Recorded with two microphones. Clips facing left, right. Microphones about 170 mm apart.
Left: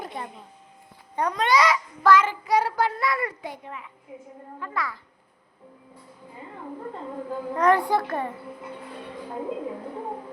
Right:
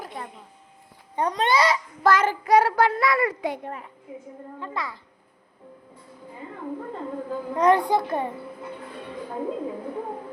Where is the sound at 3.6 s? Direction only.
45° right (ahead or behind).